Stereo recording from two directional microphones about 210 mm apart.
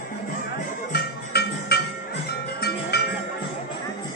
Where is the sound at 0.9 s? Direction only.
50° left (ahead or behind).